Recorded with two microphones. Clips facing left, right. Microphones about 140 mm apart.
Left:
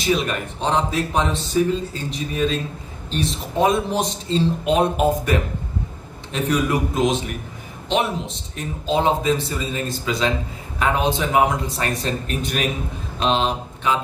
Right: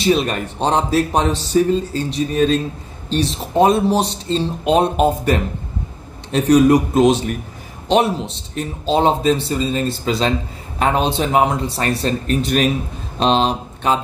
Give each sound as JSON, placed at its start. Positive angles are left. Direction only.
{"t": 0.0, "sound": "speech", "side_deg": -35}
{"t": 3.5, "sound": "speech", "side_deg": -35}